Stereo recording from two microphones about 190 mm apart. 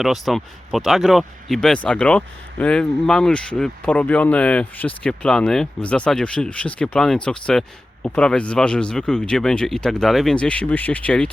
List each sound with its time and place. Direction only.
0.0 s speech: centre (ahead or behind)